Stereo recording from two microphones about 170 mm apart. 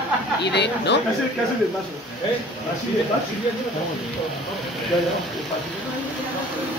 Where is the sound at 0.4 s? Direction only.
85° left.